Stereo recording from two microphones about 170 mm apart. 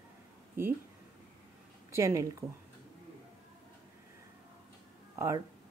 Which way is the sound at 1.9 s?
15° right (ahead or behind).